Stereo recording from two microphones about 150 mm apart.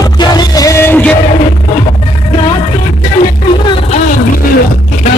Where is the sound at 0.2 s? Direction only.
25° left (ahead or behind).